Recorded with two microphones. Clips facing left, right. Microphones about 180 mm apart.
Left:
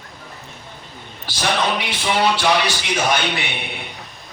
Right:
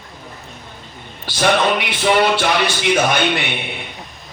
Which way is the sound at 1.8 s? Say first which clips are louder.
Right 5 dB; 60° right (ahead or behind).